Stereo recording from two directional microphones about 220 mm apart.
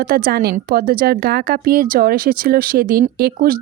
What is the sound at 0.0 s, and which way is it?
A woman's voice, 40° right (ahead or behind).